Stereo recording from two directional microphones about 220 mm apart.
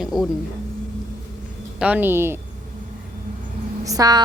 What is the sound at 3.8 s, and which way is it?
Speech, 15° right (ahead or behind).